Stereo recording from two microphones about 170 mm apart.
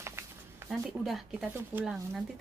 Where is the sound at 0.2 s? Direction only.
15° right (ahead or behind).